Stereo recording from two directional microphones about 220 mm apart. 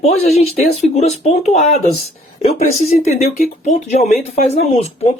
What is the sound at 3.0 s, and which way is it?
Speech, 35° left (ahead or behind).